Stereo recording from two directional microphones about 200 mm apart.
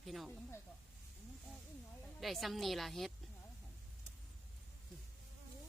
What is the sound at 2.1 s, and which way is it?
Speech, centre (ahead or behind).